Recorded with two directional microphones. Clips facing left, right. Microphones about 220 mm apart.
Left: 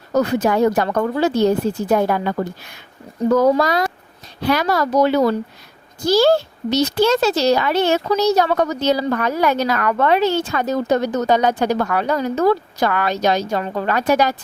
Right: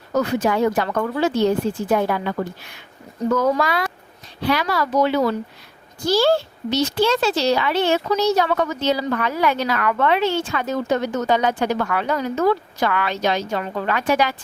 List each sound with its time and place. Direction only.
0.1 s a child's voice: 40° left (ahead or behind)